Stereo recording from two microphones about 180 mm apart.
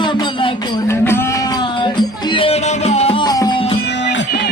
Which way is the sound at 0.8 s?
15° left (ahead or behind).